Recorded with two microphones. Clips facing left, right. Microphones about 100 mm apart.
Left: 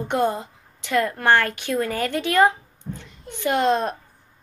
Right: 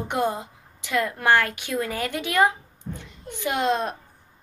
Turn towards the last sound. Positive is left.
turn(degrees=-5)  # may be behind; listen again after turning